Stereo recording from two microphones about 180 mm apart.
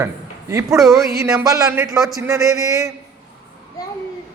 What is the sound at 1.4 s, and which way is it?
Speech, 20° right (ahead or behind).